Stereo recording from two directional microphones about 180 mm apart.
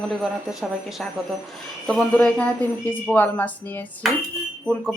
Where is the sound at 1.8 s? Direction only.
Centre (ahead or behind).